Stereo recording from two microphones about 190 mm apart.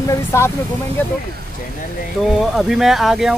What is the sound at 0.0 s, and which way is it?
Speech, 15° left (ahead or behind).